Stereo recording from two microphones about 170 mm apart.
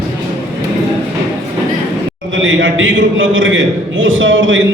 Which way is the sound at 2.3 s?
90° right.